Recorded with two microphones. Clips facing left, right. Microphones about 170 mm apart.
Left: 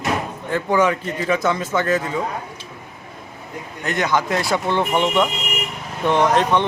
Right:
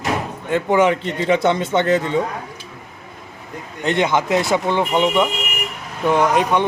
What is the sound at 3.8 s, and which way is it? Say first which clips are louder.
Speech: right 3 dB; 25° right (ahead or behind).